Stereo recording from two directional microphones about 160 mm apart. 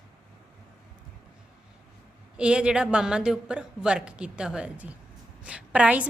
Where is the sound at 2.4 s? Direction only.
5° right (ahead or behind).